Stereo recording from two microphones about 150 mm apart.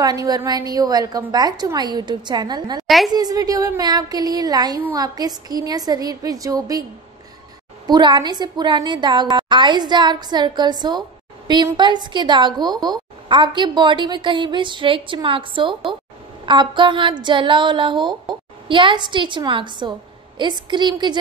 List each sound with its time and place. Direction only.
0.0 s a woman's voice: 25° right (ahead or behind)